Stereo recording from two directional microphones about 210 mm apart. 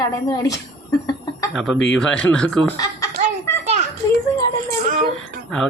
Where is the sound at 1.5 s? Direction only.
Centre (ahead or behind).